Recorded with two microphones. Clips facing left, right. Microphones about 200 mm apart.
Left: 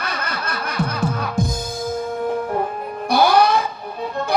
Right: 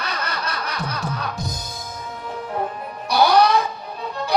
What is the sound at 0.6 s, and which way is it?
Music, 50° left (ahead or behind).